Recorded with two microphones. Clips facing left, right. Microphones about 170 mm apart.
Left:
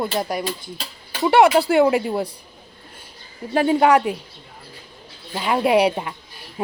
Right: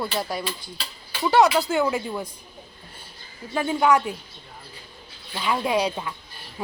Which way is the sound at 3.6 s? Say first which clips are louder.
Left 5 dB; 70° left (ahead or behind).